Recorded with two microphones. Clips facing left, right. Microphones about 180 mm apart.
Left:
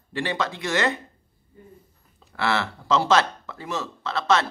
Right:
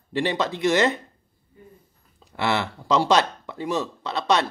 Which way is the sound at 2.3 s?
20° right (ahead or behind).